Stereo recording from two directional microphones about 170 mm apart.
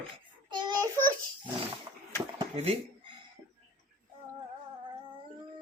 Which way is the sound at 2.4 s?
30° right (ahead or behind).